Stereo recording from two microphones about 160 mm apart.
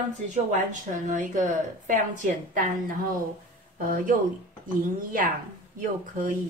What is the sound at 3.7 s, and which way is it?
Speech, 60° right (ahead or behind).